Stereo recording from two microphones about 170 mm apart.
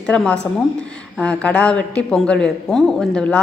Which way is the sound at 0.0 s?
5° left (ahead or behind).